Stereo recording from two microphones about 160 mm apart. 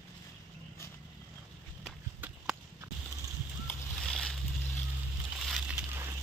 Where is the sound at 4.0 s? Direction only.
Centre (ahead or behind).